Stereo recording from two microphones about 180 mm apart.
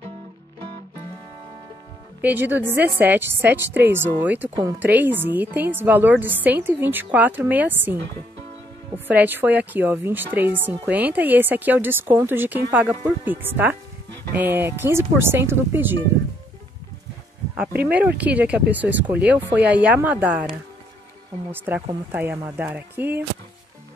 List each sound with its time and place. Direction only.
2.2 s a woman's voice: 10° right (ahead or behind)
17.6 s a woman's voice: 5° right (ahead or behind)
21.5 s a woman's voice: 10° right (ahead or behind)